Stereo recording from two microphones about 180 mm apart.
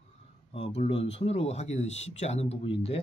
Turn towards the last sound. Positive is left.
turn(degrees=30)  # may be behind; listen again after turning